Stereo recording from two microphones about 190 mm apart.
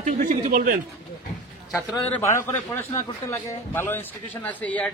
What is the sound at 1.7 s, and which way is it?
A man's voice, 10° left (ahead or behind).